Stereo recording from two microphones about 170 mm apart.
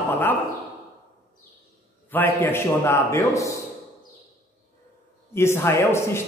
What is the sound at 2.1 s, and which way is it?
Speech, 10° left (ahead or behind).